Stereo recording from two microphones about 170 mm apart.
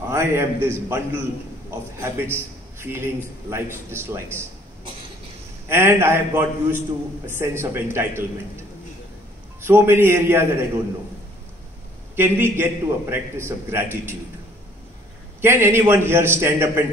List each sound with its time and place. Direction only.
0.1 s a man's voice: 15° right (ahead or behind)
5.7 s a man's voice: 15° right (ahead or behind)
9.6 s a man's voice: 15° right (ahead or behind)
12.2 s a man's voice: 15° right (ahead or behind)
15.4 s a man's voice: 15° right (ahead or behind)